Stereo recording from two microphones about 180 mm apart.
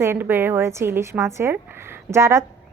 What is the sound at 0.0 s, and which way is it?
A woman's voice, 15° right (ahead or behind).